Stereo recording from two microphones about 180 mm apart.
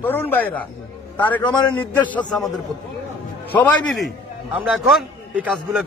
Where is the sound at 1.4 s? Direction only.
25° left (ahead or behind).